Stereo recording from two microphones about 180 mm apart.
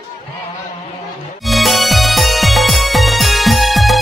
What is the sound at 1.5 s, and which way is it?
Music, centre (ahead or behind).